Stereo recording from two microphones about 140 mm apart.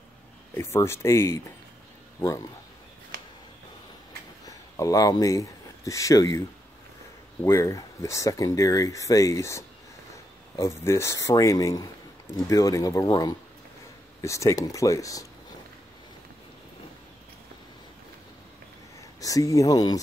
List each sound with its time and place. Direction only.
0.6 s speech: 20° left (ahead or behind)
4.5 s speech: 25° left (ahead or behind)
7.4 s speech: 20° left (ahead or behind)
19.1 s speech: 25° left (ahead or behind)